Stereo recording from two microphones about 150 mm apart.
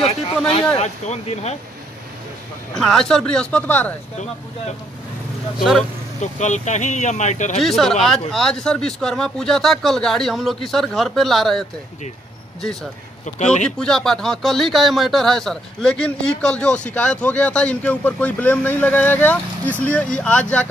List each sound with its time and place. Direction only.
0.7 s speech: 45° left (ahead or behind)
2.7 s speech: 5° left (ahead or behind)
5.6 s speech: centre (ahead or behind)
6.2 s speech: 50° left (ahead or behind)
7.6 s speech: 5° left (ahead or behind)
13.7 s speech: 5° left (ahead or behind)